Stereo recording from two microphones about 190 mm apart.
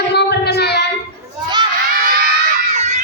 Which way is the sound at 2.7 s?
40° right (ahead or behind).